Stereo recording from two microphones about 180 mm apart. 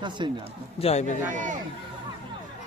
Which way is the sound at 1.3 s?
45° right (ahead or behind).